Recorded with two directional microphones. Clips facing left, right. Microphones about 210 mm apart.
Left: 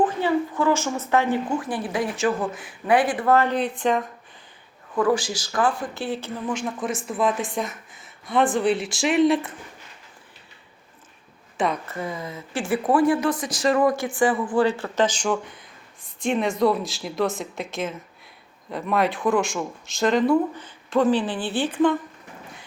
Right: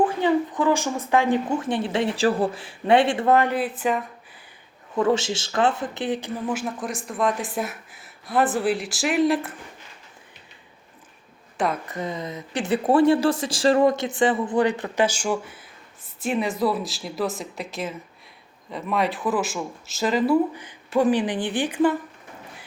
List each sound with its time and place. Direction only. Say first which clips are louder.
0.0 s speech: right 1 dB; 15° right (ahead or behind)
4.9 s speech: even; 25° right (ahead or behind); by 9.5 s centre (ahead or behind)
11.5 s a woman's voice: even; centre (ahead or behind)
11.9 s speech: right 1 dB; 20° right (ahead or behind)